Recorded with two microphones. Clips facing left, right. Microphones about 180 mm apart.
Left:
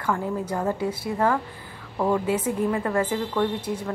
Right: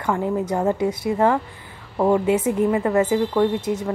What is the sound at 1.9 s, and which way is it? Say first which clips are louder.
A woman's voice: right 5 dB; 25° right (ahead or behind).